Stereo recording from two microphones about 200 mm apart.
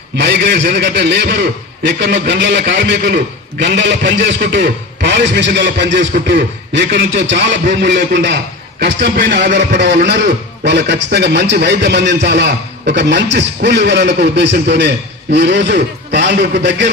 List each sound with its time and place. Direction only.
0.2 s a man's voice: 60° right (ahead or behind)